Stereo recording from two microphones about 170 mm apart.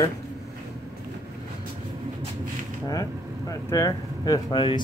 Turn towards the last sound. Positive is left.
turn(degrees=25)  # may be behind; listen again after turning